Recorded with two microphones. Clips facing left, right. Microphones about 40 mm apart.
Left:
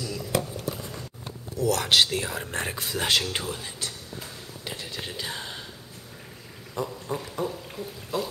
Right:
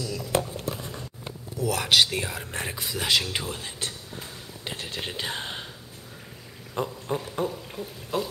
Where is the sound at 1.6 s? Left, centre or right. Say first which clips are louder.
Even; centre.